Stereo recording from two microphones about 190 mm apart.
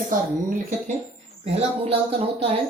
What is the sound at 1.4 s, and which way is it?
Speech, 30° right (ahead or behind).